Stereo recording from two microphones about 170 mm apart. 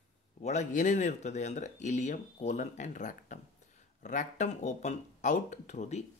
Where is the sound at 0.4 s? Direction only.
45° left (ahead or behind).